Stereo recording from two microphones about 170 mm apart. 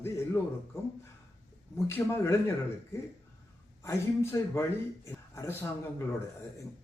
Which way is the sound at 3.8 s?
15° left (ahead or behind).